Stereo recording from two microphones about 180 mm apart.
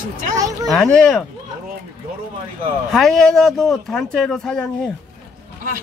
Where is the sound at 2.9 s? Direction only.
Centre (ahead or behind).